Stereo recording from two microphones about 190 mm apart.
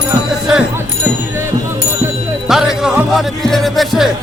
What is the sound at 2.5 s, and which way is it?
Speech, centre (ahead or behind).